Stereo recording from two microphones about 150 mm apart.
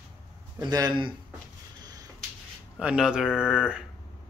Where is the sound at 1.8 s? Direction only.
25° right (ahead or behind).